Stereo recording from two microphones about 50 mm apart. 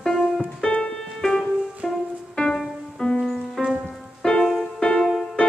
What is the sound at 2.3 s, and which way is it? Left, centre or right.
Music, centre.